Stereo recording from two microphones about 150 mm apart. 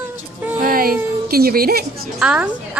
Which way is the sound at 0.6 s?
75° right (ahead or behind).